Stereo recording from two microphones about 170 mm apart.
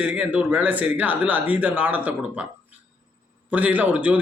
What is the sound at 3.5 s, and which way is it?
Speech, 10° right (ahead or behind).